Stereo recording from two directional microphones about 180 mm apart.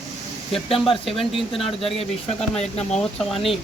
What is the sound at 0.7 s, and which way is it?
Speech, 30° left (ahead or behind).